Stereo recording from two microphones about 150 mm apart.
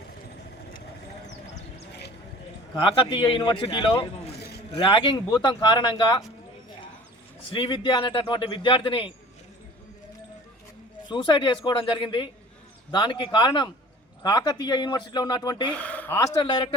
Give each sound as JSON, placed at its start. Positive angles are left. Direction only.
{"t": 3.1, "sound": "speech", "side_deg": 35}
{"t": 7.5, "sound": "speech", "side_deg": 35}
{"t": 11.1, "sound": "speech", "side_deg": 30}
{"t": 15.7, "sound": "speech", "side_deg": 10}
{"t": 16.4, "sound": "speech", "side_deg": 30}